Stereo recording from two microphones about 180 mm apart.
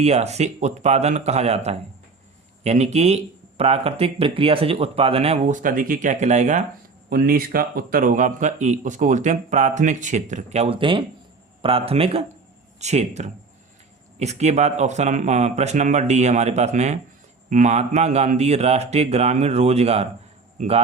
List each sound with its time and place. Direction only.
0.0 s speech: 35° right (ahead or behind)
7.1 s a man's voice: 55° right (ahead or behind); by 20.8 s 35° right (ahead or behind)